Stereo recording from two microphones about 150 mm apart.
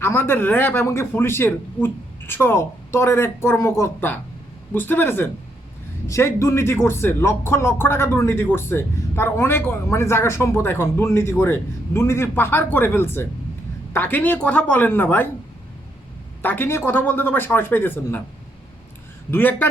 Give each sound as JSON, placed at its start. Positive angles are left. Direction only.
{"t": 0.0, "sound": "speech", "side_deg": 15}
{"t": 16.4, "sound": "speech", "side_deg": 15}
{"t": 19.3, "sound": "speech", "side_deg": 10}